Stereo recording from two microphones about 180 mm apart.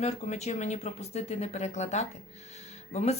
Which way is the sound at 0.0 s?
35° left (ahead or behind).